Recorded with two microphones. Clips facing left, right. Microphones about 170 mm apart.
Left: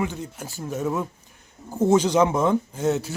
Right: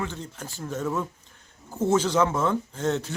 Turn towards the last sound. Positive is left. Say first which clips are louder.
# left 3 dB
turn(degrees=10)  # may be behind; listen again after turning